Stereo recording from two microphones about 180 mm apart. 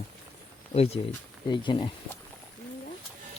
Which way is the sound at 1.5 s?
25° left (ahead or behind).